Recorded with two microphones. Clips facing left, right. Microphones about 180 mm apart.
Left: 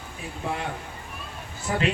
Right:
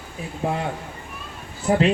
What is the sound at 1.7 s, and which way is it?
Speech, 25° right (ahead or behind).